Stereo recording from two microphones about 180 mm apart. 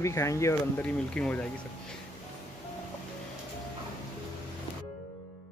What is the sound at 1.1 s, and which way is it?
Speech, 5° left (ahead or behind).